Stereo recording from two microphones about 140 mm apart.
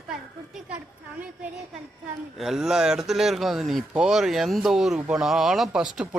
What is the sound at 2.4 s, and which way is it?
Speech, centre (ahead or behind).